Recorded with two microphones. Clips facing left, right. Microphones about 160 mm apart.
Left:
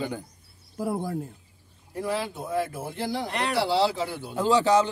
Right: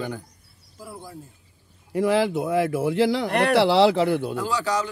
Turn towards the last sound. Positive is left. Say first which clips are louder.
# left 5 dB
turn(degrees=25)  # may be behind; listen again after turning